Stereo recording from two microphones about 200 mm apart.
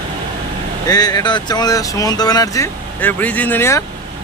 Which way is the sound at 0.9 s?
20° left (ahead or behind).